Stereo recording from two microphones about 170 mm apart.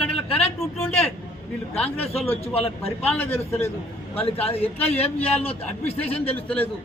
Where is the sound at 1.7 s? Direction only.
35° left (ahead or behind).